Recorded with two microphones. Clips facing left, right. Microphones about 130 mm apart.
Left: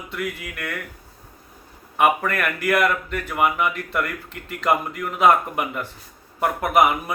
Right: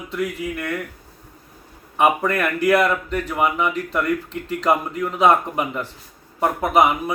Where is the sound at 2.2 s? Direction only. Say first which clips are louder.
Right 4 dB; 30° right (ahead or behind).